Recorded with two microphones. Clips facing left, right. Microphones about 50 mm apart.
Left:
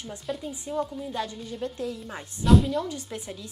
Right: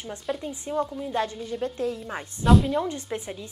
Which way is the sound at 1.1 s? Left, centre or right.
Right.